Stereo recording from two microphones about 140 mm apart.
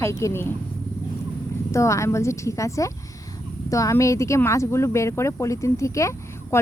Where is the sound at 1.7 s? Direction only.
20° left (ahead or behind).